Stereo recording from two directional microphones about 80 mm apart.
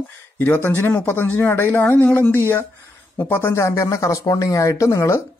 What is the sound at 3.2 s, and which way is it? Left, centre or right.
Speech, left.